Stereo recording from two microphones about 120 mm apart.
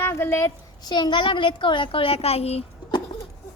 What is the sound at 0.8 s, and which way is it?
A woman's voice, 35° left (ahead or behind).